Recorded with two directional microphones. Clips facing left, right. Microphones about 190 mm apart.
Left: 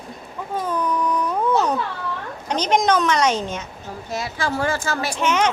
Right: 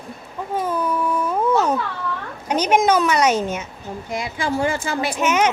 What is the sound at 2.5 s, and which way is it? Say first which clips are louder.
A woman's voice: right 2 dB; 10° right (ahead or behind).